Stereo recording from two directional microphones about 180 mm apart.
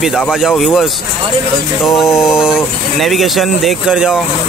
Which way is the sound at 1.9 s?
Centre (ahead or behind).